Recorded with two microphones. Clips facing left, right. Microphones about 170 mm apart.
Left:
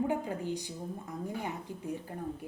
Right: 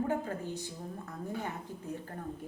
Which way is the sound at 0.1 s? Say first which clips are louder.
Left 1 dB; 15° left (ahead or behind).